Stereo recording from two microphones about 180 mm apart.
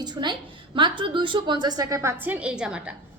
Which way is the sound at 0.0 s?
25° right (ahead or behind).